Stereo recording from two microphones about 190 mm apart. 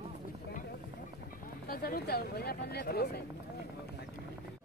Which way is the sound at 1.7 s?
50° left (ahead or behind).